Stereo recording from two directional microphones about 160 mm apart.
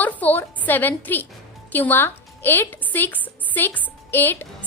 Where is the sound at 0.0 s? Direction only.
10° left (ahead or behind).